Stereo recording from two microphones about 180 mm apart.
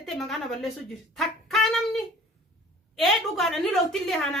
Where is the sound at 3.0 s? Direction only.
Centre (ahead or behind).